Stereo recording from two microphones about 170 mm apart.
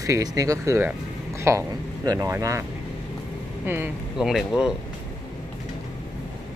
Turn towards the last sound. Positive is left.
turn(degrees=0)  # may be behind; listen again after turning